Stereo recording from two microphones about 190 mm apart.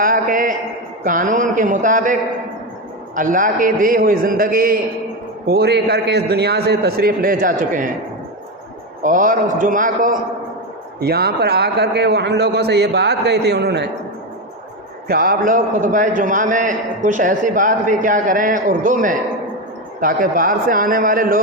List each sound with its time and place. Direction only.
0.0 s a sound: 45° right (ahead or behind)
1.0 s a man's voice: 45° right (ahead or behind)
3.2 s a man's voice: 45° right (ahead or behind)
9.0 s a man's voice: 45° right (ahead or behind)
11.0 s a man's voice: 55° right (ahead or behind)
15.0 s a man's voice: 50° right (ahead or behind)